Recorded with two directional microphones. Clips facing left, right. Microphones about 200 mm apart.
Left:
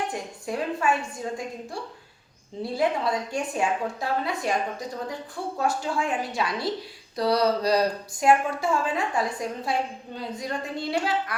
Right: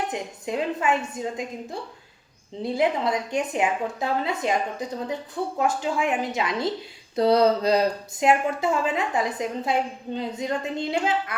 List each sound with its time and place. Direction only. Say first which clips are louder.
0.1 s speech: right 2 dB; 20° right (ahead or behind)
2.6 s speech: right 2 dB; 20° right (ahead or behind)
5.5 s speech: right 2 dB; 20° right (ahead or behind)